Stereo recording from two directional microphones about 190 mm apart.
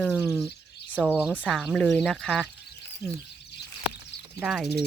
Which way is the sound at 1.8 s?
5° left (ahead or behind).